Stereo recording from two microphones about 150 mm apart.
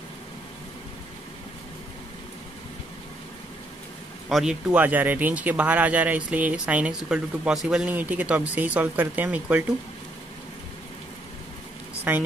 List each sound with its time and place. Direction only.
4.3 s speech: 5° right (ahead or behind)
12.1 s speech: 10° right (ahead or behind)